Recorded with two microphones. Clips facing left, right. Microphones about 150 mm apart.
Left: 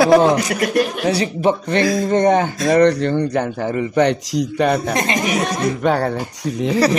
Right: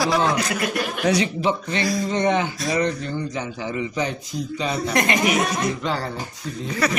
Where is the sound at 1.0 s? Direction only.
30° left (ahead or behind).